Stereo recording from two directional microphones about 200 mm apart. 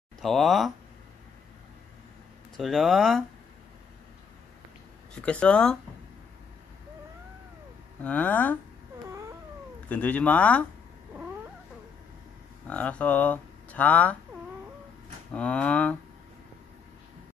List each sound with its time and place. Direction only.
0.2 s speech: centre (ahead or behind)
2.5 s speech: centre (ahead or behind)
5.1 s speech: 5° left (ahead or behind)
8.0 s speech: 10° left (ahead or behind)
9.8 s speech: 5° left (ahead or behind)
12.6 s speech: 5° left (ahead or behind)
15.3 s speech: 5° left (ahead or behind)